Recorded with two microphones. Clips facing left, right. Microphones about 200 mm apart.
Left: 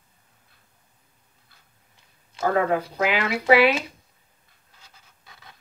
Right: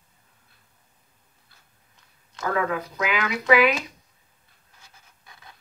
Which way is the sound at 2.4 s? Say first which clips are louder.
Left 4 dB; 35° left (ahead or behind).